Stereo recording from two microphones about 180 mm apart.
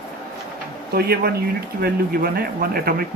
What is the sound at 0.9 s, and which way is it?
Speech, 60° right (ahead or behind).